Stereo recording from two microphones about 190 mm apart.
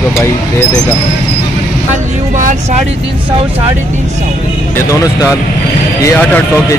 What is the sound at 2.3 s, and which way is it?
Speech, 40° right (ahead or behind).